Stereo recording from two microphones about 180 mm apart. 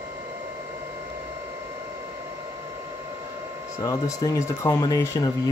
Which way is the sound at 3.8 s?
15° left (ahead or behind).